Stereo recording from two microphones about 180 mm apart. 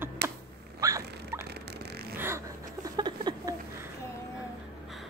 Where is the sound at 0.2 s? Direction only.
65° right (ahead or behind).